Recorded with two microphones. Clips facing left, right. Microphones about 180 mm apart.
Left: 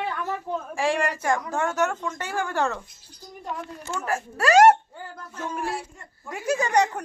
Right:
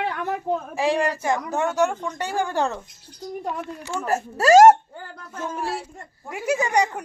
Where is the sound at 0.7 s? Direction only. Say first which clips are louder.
Right 1 dB; 20° right (ahead or behind).